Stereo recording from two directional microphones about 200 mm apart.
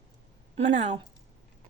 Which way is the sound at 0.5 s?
35° right (ahead or behind).